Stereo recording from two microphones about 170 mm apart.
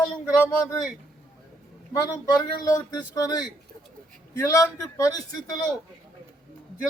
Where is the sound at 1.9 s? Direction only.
20° left (ahead or behind).